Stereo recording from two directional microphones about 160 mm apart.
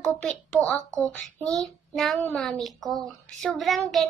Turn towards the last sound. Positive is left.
turn(degrees=0)  # may be behind; listen again after turning